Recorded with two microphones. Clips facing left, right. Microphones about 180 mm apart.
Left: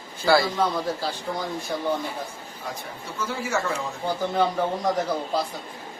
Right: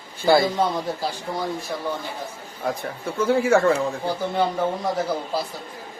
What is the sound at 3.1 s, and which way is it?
Speech, 55° right (ahead or behind).